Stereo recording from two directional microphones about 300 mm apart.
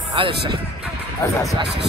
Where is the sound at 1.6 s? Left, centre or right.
Right.